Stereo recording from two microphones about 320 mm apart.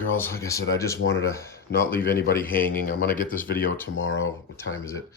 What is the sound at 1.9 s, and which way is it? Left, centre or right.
Speech, left.